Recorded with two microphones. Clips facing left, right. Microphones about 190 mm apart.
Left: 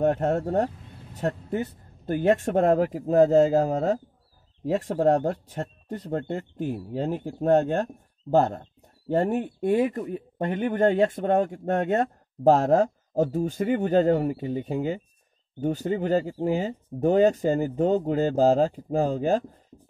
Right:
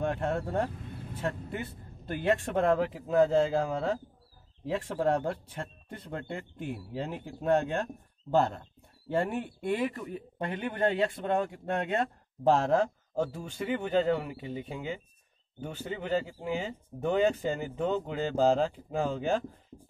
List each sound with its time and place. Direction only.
0.0 s speech: 45° left (ahead or behind)